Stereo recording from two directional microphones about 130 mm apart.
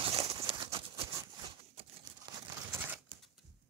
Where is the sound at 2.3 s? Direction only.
40° right (ahead or behind).